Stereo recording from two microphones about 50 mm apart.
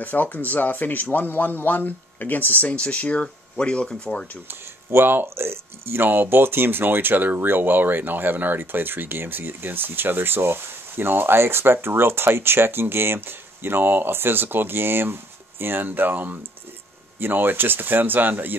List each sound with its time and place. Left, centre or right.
0.0 s speech: left; by 4.4 s centre
4.5 s speech: right